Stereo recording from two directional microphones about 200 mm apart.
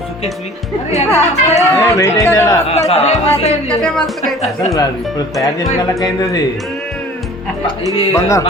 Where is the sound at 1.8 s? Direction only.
15° left (ahead or behind).